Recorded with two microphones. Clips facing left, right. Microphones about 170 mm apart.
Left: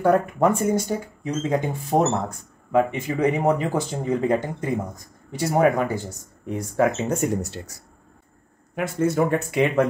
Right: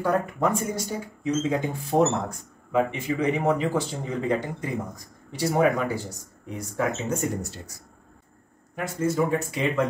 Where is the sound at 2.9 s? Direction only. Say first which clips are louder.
Left 3 dB; 50° left (ahead or behind).